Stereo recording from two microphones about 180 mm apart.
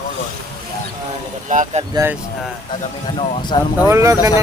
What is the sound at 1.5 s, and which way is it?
Speech, 45° right (ahead or behind).